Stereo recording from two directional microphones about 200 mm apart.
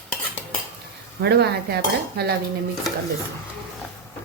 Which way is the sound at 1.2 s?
55° right (ahead or behind).